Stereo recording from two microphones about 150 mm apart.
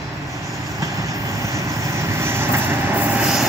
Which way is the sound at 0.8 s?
20° right (ahead or behind).